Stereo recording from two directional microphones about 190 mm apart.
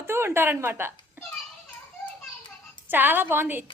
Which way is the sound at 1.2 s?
10° right (ahead or behind).